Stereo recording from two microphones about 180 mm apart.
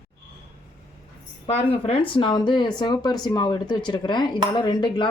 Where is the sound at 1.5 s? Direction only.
35° left (ahead or behind).